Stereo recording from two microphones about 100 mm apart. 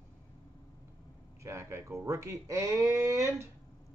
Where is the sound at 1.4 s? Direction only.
30° right (ahead or behind).